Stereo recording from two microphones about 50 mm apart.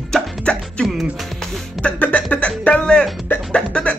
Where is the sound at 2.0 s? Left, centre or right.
Left.